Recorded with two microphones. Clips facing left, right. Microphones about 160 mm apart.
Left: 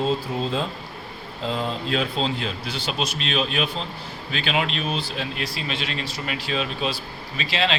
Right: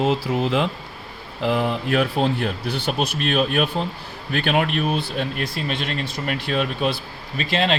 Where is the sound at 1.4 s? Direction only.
70° right (ahead or behind).